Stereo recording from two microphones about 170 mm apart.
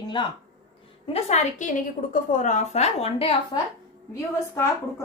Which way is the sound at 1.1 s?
40° left (ahead or behind).